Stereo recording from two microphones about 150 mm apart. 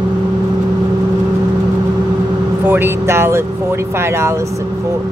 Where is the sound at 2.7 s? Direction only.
15° right (ahead or behind).